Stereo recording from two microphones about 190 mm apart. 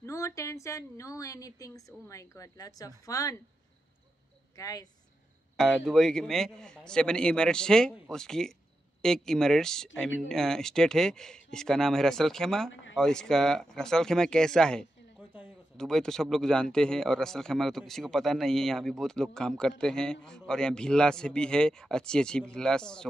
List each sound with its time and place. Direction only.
0.0 s a woman's voice: 15° left (ahead or behind)
4.6 s speech: 20° left (ahead or behind)
5.6 s speech: centre (ahead or behind)